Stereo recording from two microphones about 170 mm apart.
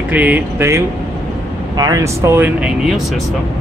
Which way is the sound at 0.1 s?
10° right (ahead or behind).